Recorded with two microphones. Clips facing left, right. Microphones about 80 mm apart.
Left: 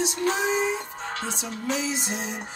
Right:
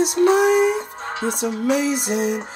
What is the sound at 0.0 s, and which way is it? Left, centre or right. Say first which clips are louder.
Music: right 10 dB; right.